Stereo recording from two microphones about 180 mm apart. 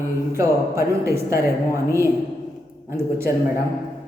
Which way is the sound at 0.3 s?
15° right (ahead or behind).